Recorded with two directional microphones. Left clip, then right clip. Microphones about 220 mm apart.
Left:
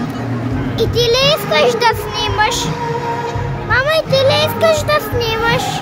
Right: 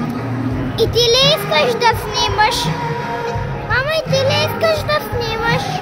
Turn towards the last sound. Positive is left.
turn(degrees=10)  # may be behind; listen again after turning